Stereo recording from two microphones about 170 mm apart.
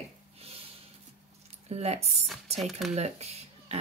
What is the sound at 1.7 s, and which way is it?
Speech, 40° right (ahead or behind).